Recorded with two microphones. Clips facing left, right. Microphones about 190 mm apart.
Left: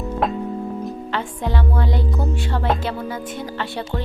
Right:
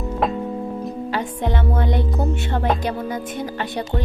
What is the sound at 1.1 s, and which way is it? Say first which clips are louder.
A woman's voice: right 1 dB; 20° right (ahead or behind).